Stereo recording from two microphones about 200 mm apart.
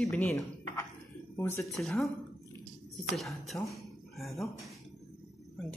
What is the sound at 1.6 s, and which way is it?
Speech, centre (ahead or behind).